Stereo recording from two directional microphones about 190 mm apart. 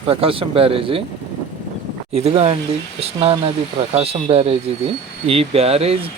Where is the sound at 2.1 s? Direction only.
35° right (ahead or behind).